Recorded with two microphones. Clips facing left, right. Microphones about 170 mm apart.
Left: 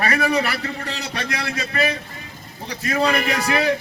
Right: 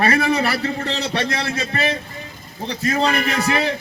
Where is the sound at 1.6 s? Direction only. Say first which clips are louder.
Right 1 dB; 25° right (ahead or behind).